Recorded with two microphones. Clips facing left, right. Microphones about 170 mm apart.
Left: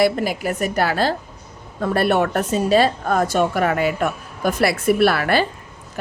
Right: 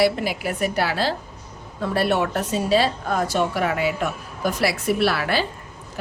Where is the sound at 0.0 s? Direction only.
45° left (ahead or behind).